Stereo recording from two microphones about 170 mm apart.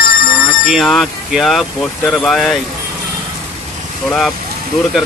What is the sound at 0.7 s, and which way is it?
Speech, centre (ahead or behind).